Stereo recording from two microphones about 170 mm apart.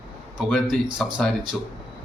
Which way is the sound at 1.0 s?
5° left (ahead or behind).